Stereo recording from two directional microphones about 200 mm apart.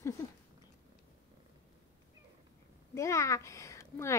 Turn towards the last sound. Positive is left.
turn(degrees=15)  # may be behind; listen again after turning